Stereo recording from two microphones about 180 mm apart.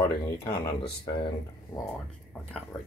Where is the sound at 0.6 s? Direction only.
60° left (ahead or behind).